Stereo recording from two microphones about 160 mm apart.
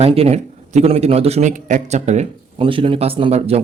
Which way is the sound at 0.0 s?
40° right (ahead or behind).